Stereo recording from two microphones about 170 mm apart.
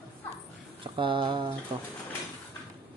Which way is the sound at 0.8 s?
30° right (ahead or behind).